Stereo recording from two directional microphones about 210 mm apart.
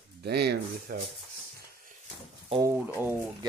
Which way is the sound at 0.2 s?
50° right (ahead or behind).